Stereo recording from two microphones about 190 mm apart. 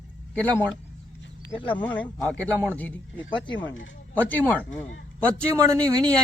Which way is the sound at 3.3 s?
25° left (ahead or behind).